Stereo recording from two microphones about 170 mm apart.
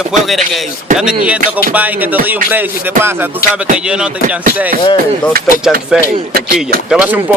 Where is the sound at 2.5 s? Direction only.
15° right (ahead or behind).